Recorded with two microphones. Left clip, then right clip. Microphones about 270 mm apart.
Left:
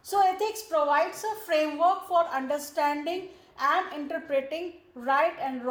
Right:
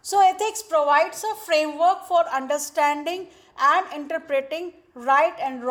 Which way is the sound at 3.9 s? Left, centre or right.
Right.